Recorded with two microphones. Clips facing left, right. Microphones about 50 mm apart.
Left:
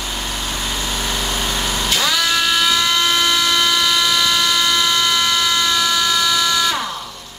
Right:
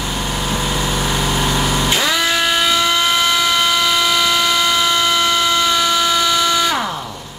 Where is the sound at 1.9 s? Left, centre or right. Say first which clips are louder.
Left 1 dB; centre.